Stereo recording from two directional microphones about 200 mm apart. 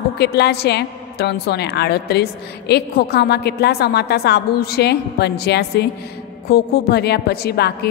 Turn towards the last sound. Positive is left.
turn(degrees=55)  # may be behind; listen again after turning